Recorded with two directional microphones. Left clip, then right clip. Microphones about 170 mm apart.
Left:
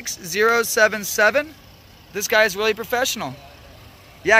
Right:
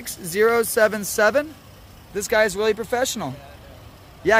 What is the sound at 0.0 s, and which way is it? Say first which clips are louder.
Speech: even; 15° right (ahead or behind).